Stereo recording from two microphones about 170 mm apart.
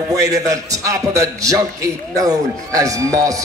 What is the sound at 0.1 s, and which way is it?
A man's voice, 20° right (ahead or behind).